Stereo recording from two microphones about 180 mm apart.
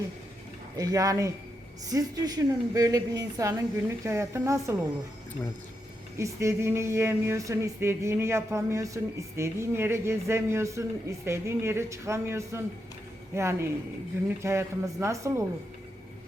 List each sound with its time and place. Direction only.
0.8 s a woman's voice: 20° right (ahead or behind)
6.1 s speech: 15° right (ahead or behind)